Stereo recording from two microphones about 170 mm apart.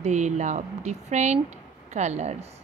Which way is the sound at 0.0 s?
45° right (ahead or behind).